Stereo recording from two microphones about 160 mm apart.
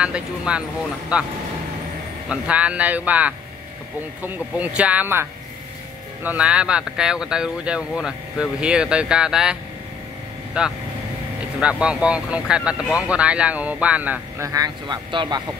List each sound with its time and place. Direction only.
0.0 s speech: 5° right (ahead or behind)
14.5 s speech: 25° right (ahead or behind)